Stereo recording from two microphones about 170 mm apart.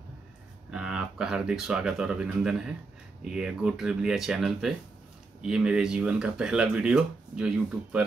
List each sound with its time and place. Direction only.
0.7 s speech: 5° right (ahead or behind)